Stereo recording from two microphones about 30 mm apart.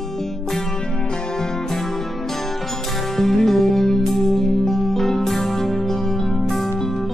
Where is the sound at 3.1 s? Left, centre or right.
Centre.